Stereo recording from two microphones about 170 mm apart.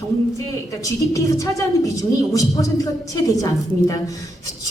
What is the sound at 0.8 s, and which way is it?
A woman's voice, 20° left (ahead or behind).